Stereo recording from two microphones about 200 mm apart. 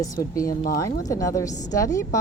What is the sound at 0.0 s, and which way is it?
Speech, 15° left (ahead or behind).